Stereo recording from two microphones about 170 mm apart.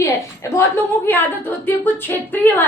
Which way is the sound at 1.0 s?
10° left (ahead or behind).